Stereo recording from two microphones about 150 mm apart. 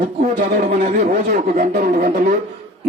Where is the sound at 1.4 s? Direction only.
65° right (ahead or behind).